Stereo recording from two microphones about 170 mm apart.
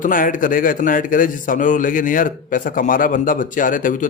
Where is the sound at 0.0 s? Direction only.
50° left (ahead or behind).